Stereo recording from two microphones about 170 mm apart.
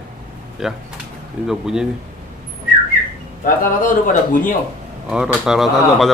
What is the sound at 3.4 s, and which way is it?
Speech, 50° left (ahead or behind).